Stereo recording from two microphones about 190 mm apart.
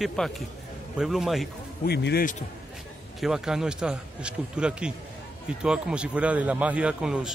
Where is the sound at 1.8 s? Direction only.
60° left (ahead or behind).